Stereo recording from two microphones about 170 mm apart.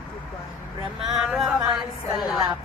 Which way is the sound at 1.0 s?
Centre (ahead or behind).